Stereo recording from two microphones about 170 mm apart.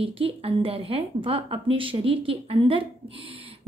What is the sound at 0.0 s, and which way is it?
A woman's voice, 35° right (ahead or behind).